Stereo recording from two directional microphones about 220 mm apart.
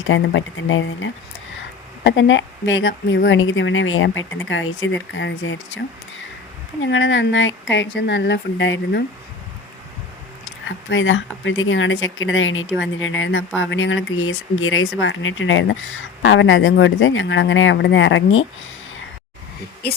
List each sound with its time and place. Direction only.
0.0 s speech: 60° left (ahead or behind)
10.7 s speech: 55° left (ahead or behind)